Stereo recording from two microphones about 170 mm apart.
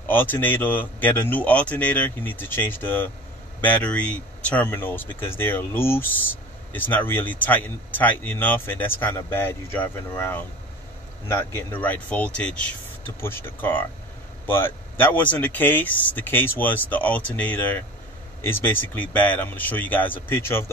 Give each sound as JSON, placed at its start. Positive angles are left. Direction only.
{"t": 0.1, "sound": "speech", "side_deg": 10}